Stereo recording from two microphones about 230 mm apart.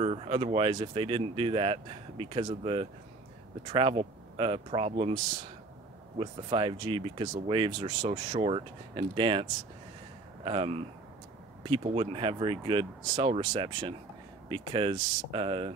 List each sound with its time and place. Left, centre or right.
0.0 s speech: right